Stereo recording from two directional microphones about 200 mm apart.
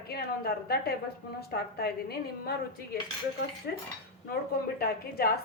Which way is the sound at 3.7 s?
55° left (ahead or behind).